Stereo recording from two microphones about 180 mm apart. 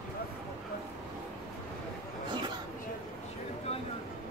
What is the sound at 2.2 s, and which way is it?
Chatter, 25° right (ahead or behind).